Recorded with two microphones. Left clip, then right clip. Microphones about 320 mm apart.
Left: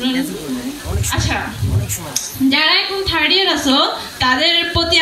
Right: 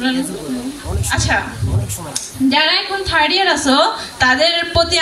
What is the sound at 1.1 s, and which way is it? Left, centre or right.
Speech, right.